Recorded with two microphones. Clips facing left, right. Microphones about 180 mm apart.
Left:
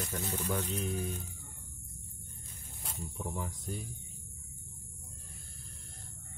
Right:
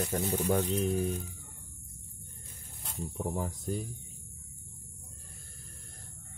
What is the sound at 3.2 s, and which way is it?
Speech, 40° right (ahead or behind).